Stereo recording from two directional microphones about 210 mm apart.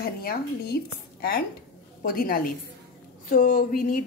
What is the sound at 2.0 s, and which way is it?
Speech, 45° left (ahead or behind).